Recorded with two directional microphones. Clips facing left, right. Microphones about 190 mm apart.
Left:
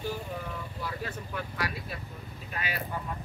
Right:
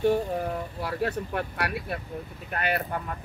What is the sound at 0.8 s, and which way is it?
Speech, 65° right (ahead or behind).